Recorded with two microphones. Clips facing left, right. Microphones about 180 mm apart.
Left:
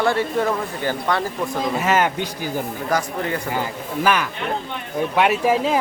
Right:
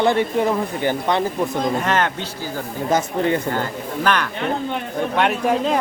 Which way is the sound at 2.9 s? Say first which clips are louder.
Right 6 dB; 25° right (ahead or behind).